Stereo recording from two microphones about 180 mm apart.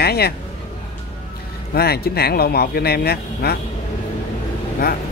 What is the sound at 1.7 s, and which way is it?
Speech, 60° left (ahead or behind).